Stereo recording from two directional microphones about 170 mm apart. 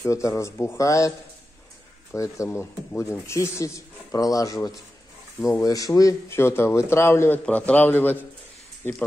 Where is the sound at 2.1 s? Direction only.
15° left (ahead or behind).